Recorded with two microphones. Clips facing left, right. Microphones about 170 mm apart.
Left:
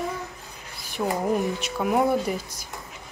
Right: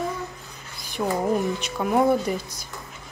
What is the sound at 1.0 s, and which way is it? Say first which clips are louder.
Speech: right 1 dB; centre (ahead or behind).